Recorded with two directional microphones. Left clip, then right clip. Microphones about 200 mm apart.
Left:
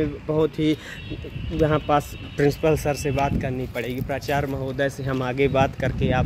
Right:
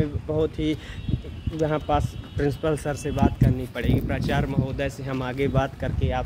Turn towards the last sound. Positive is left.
turn(degrees=40)  # may be behind; listen again after turning